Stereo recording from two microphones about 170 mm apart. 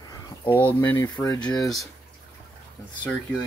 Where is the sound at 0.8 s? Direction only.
15° left (ahead or behind).